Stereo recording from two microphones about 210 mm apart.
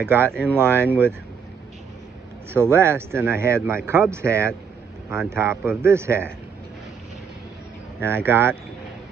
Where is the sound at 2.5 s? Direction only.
10° right (ahead or behind).